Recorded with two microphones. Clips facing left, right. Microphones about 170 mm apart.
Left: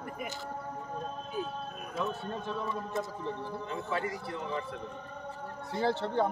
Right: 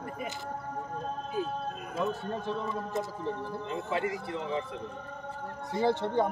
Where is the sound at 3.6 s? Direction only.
20° right (ahead or behind).